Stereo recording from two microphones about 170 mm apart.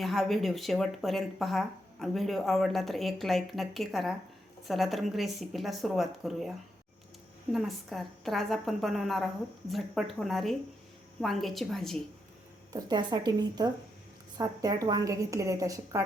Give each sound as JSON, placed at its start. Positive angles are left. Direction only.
{"t": 0.0, "sound": "speech", "side_deg": 0}
{"t": 7.5, "sound": "speech", "side_deg": 0}
{"t": 12.7, "sound": "a woman's voice", "side_deg": -25}